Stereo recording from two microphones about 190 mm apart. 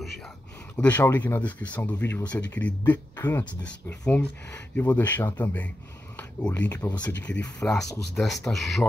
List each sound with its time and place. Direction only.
0.7 s speech: 10° left (ahead or behind)
6.1 s a sound: 10° left (ahead or behind)
6.7 s speech: 20° left (ahead or behind)
7.2 s speech: 5° left (ahead or behind)